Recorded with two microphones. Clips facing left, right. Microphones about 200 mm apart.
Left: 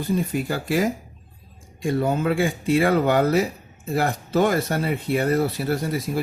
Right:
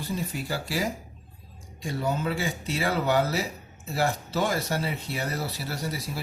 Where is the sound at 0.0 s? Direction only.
55° left (ahead or behind).